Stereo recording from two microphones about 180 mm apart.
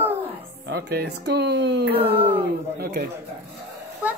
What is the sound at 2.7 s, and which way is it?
Speech, 60° right (ahead or behind).